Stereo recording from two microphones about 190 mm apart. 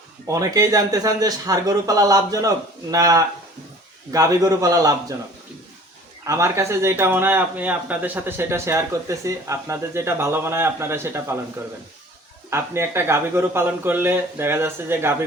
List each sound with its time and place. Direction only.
0.3 s speech: 20° right (ahead or behind)
6.2 s speech: 15° right (ahead or behind)
12.5 s speech: 15° right (ahead or behind)